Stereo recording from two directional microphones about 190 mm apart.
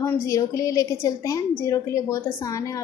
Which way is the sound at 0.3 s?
15° left (ahead or behind).